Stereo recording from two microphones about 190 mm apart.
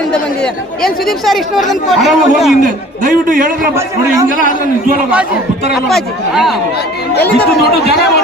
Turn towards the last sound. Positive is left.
turn(degrees=0)  # may be behind; listen again after turning